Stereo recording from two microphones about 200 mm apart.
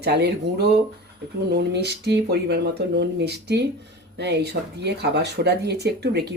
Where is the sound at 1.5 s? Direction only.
55° right (ahead or behind).